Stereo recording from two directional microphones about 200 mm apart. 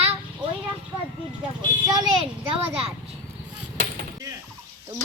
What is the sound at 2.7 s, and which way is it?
Speech, 30° right (ahead or behind).